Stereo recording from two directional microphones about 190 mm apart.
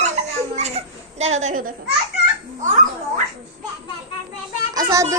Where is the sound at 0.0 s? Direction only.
35° right (ahead or behind).